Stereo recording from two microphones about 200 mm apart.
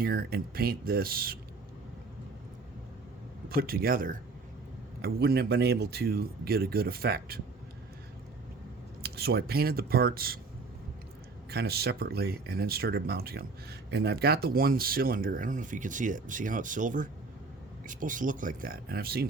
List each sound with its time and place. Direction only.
0.0 s speech: 50° right (ahead or behind)
3.5 s speech: 50° right (ahead or behind)
9.0 s speech: 50° right (ahead or behind)
11.5 s speech: 50° right (ahead or behind)